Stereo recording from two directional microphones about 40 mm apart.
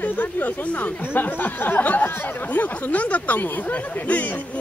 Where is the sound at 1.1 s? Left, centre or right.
Left.